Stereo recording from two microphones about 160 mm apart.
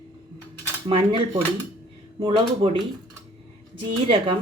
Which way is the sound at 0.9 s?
30° right (ahead or behind).